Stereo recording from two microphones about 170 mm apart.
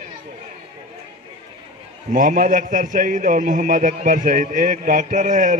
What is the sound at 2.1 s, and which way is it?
A man's voice, 50° right (ahead or behind).